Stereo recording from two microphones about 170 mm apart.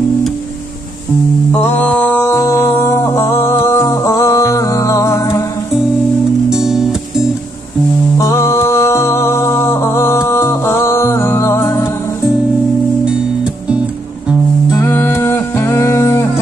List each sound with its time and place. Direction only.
1.5 s music: 10° left (ahead or behind)
6.5 s music: 5° right (ahead or behind)
8.2 s music: 15° left (ahead or behind)
14.7 s music: 15° left (ahead or behind)